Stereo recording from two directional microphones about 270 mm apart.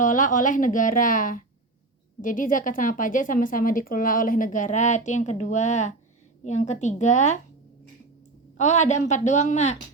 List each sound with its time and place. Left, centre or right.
0.0 s a woman's voice: left
8.5 s a woman's voice: left